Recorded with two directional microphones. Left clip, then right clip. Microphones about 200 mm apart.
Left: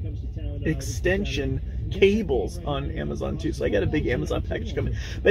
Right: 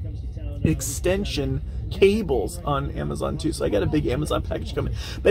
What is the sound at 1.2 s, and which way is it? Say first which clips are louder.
Speech: right 1 dB; 55° right (ahead or behind).